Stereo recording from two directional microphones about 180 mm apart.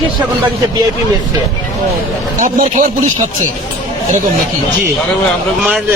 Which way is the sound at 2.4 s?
45° right (ahead or behind).